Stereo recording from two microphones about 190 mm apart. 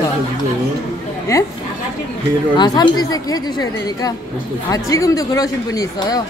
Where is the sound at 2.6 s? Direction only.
20° left (ahead or behind).